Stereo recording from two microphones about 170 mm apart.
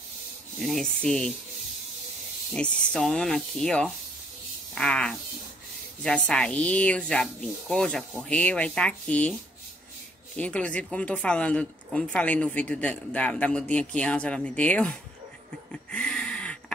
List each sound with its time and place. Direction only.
0.6 s speech: centre (ahead or behind)
2.5 s speech: 5° left (ahead or behind)
10.3 s speech: 10° left (ahead or behind)
15.7 s a sound: 5° left (ahead or behind)